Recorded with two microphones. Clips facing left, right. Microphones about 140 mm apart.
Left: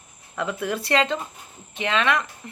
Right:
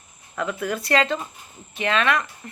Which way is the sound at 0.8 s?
20° left (ahead or behind).